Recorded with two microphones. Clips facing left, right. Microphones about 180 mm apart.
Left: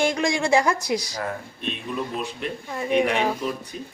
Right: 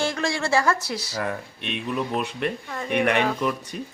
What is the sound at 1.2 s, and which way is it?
Speech, 70° right (ahead or behind).